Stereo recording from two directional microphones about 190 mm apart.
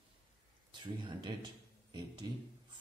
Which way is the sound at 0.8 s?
25° right (ahead or behind).